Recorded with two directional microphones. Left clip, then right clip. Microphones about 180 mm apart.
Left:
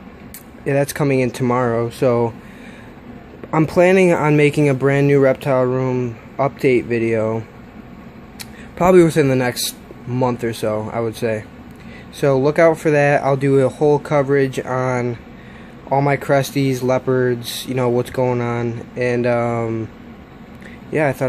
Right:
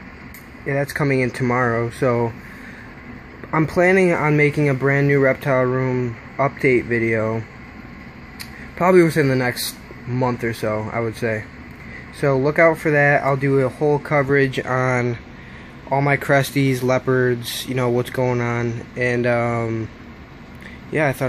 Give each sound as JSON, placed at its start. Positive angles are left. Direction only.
{"t": 0.7, "sound": "speech", "side_deg": 40}
{"t": 0.9, "sound": "speech", "side_deg": 25}
{"t": 3.7, "sound": "speech", "side_deg": 30}
{"t": 5.3, "sound": "speech", "side_deg": 15}
{"t": 8.7, "sound": "a man's voice", "side_deg": 30}
{"t": 15.9, "sound": "speech", "side_deg": 20}
{"t": 20.9, "sound": "speech", "side_deg": 15}